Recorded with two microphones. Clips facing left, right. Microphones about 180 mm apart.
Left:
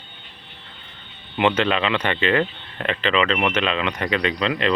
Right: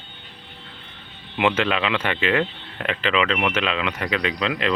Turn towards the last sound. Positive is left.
turn(degrees=-5)  # may be behind; listen again after turning